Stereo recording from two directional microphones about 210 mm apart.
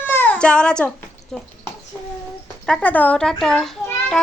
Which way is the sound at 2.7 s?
5° left (ahead or behind).